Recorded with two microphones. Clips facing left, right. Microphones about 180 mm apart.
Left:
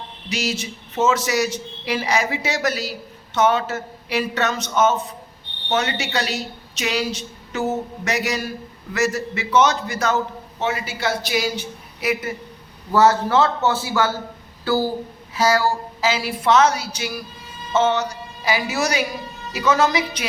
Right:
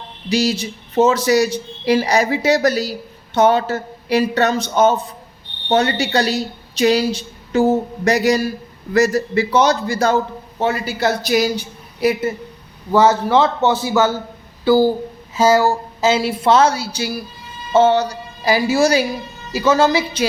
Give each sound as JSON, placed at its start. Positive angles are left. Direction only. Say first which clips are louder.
{"t": 0.3, "sound": "speech", "louder": "right 8 dB", "side_deg": -35}
{"t": 12.9, "sound": "a man's voice", "louder": "right 3 dB", "side_deg": -15}